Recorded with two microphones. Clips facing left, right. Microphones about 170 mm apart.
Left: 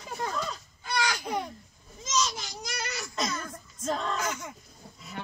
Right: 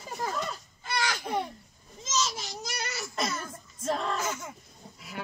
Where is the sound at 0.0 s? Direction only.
5° right (ahead or behind).